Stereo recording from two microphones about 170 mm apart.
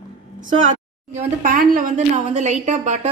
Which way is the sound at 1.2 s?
50° right (ahead or behind).